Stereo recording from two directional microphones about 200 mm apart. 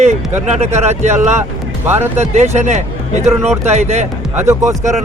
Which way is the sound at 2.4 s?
35° right (ahead or behind).